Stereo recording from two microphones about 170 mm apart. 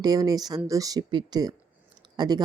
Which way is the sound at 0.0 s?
20° right (ahead or behind).